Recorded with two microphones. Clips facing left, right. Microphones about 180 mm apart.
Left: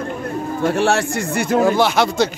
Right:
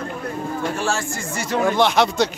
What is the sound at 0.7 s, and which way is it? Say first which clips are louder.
Speech: left 7 dB; 65° left (ahead or behind).